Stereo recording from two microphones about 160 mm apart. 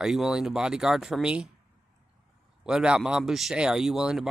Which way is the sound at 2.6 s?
5° right (ahead or behind).